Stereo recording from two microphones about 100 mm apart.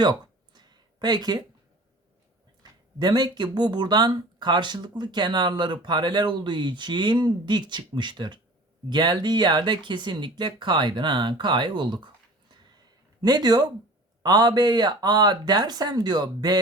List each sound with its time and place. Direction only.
0.0 s a sound: 45° right (ahead or behind)
3.0 s speech: 45° right (ahead or behind)
13.2 s speech: 45° right (ahead or behind)